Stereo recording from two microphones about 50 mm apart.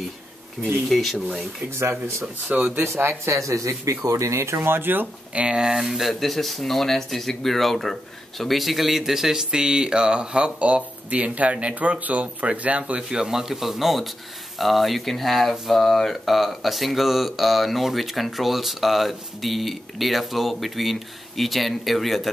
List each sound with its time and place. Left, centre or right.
0.8 s speech: centre
1.7 s speech: right
2.4 s speech: right
2.8 s speech: right
3.3 s speech: right
4.6 s speech: right
5.3 s speech: right
13.2 s speech: centre